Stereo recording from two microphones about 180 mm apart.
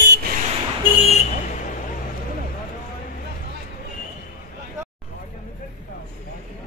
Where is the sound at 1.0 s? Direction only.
40° left (ahead or behind).